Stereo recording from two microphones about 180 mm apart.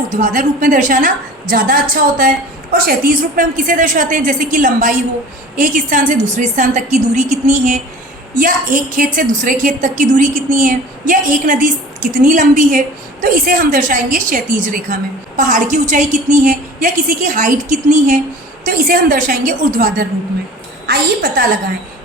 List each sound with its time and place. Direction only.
0.2 s a woman's voice: 45° right (ahead or behind)